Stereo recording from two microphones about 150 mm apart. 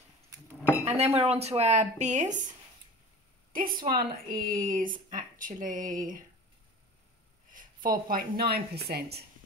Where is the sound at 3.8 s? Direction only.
75° right (ahead or behind).